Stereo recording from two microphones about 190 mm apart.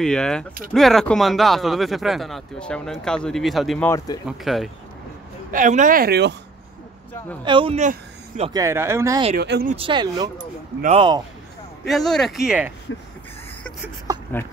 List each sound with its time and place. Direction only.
0.0 s speech: 5° left (ahead or behind)
5.5 s speech: 40° right (ahead or behind); by 6.3 s 55° right (ahead or behind)
7.4 s speech: 30° right (ahead or behind)
8.5 s speech: 15° right (ahead or behind)
9.4 s speech: 60° right (ahead or behind)
9.8 s speech: 25° right (ahead or behind)
11.9 s speech: centre (ahead or behind)